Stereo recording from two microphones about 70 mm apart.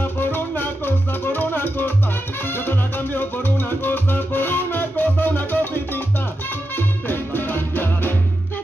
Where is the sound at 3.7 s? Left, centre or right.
Left.